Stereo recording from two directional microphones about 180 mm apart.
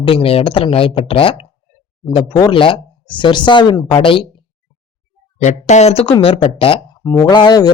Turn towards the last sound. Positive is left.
turn(degrees=20)  # may be behind; listen again after turning